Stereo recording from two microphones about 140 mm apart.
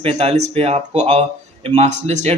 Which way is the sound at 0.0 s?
45° right (ahead or behind).